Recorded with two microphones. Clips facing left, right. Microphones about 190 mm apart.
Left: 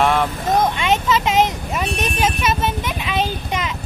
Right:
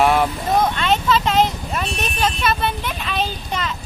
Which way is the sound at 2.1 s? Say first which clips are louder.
Even; 10° left (ahead or behind).